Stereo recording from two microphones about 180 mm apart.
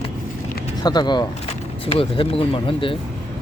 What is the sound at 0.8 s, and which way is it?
Speech, 25° left (ahead or behind).